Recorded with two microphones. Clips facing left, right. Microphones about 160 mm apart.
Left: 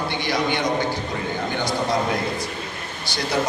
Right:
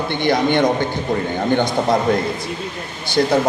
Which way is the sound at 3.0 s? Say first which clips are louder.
Right 10 dB; 55° right (ahead or behind).